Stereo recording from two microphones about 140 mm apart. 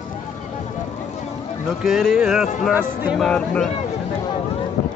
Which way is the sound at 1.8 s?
5° right (ahead or behind).